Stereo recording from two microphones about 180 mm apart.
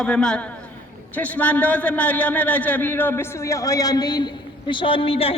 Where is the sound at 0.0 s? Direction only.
5° left (ahead or behind).